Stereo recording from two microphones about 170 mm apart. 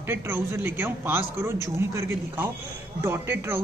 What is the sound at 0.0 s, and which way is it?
A man's voice, 15° right (ahead or behind).